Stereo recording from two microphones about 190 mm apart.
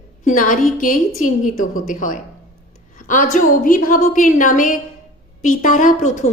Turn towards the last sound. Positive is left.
turn(degrees=40)  # may be behind; listen again after turning